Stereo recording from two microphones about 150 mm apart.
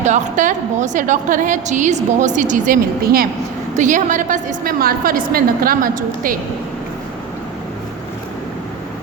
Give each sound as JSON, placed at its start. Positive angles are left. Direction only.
{"t": 0.0, "sound": "a woman's voice", "side_deg": -55}
{"t": 3.8, "sound": "a woman's voice", "side_deg": -55}